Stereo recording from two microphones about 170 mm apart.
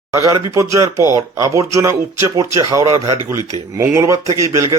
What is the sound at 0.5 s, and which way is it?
Speech, 20° right (ahead or behind).